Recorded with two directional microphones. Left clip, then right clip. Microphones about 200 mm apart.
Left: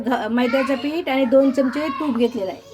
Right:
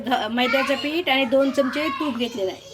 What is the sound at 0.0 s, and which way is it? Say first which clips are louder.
A woman's voice: left 1 dB; 35° left (ahead or behind).